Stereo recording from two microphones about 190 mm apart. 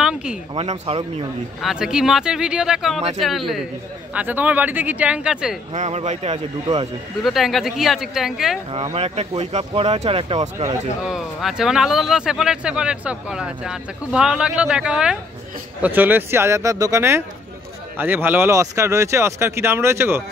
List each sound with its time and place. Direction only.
0.0 s a sound: 5° right (ahead or behind)
0.6 s speech: 30° right (ahead or behind)
1.6 s speech: centre (ahead or behind)
5.8 s speech: 35° right (ahead or behind)
7.2 s speech: centre (ahead or behind)
8.9 s speech: 30° right (ahead or behind)
11.0 s speech: centre (ahead or behind)